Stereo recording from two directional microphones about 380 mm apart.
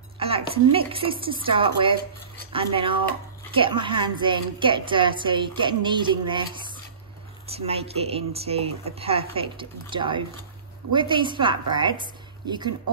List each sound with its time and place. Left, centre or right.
0.2 s a woman's voice: centre